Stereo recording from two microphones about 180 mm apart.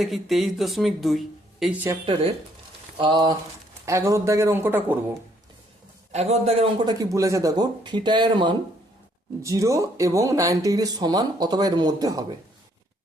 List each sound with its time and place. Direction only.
0.0 s speech: centre (ahead or behind)
3.0 s speech: 25° right (ahead or behind)
6.1 s speech: 35° right (ahead or behind); by 12.2 s 20° right (ahead or behind)